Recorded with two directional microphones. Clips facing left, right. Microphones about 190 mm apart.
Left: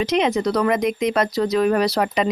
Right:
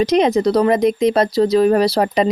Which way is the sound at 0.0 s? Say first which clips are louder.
Right 5 dB; 35° right (ahead or behind).